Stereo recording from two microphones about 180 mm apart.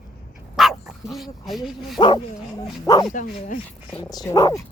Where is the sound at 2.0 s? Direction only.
25° left (ahead or behind).